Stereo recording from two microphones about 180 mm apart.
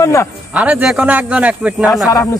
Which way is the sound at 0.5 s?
5° right (ahead or behind).